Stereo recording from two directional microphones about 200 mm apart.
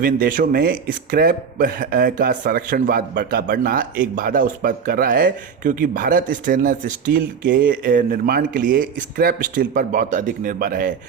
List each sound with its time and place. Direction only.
0.0 s speech: 45° right (ahead or behind)